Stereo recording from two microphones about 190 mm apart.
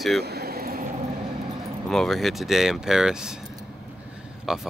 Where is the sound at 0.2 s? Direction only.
55° right (ahead or behind).